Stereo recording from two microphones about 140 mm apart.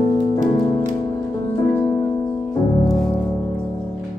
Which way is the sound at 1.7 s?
20° left (ahead or behind).